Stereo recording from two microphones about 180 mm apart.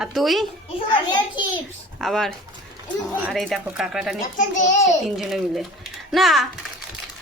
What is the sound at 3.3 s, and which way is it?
Speech, centre (ahead or behind).